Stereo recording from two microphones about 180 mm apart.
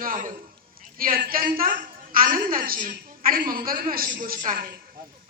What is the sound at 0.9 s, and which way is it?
A man's voice, 55° right (ahead or behind).